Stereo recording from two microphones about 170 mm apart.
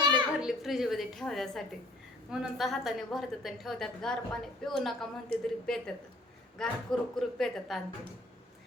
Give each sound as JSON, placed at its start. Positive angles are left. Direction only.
{"t": 0.3, "sound": "a woman's voice", "side_deg": 0}